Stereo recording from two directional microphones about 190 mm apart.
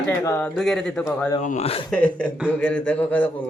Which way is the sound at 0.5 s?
Centre (ahead or behind).